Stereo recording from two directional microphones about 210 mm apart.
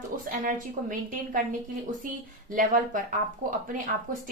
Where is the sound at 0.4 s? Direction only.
40° right (ahead or behind).